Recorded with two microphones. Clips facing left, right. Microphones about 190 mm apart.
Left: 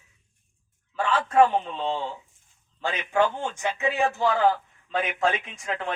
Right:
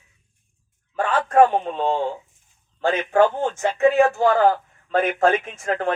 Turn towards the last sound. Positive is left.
turn(degrees=-50)  # may be behind; listen again after turning